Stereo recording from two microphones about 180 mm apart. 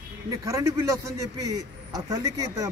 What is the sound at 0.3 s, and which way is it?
Speech, 20° right (ahead or behind).